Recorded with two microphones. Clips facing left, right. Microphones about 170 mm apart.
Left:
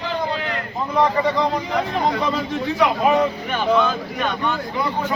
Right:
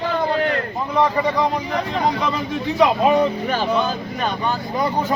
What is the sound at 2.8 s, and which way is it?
Speech, 30° right (ahead or behind).